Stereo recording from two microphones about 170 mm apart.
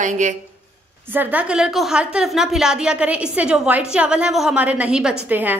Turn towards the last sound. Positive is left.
turn(degrees=-10)  # may be behind; listen again after turning